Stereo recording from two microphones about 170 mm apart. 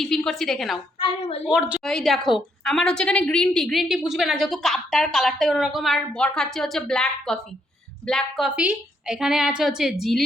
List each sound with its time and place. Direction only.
0.0 s a woman's voice: 5° left (ahead or behind)
0.9 s a woman's voice: 30° left (ahead or behind)
1.5 s a woman's voice: 5° right (ahead or behind)